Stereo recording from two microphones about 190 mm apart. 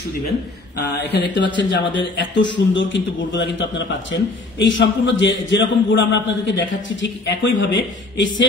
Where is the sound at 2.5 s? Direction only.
75° left (ahead or behind).